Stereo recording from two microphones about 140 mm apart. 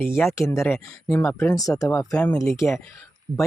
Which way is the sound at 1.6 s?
25° left (ahead or behind).